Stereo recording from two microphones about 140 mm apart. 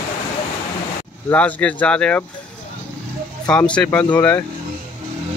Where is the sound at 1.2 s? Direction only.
10° left (ahead or behind).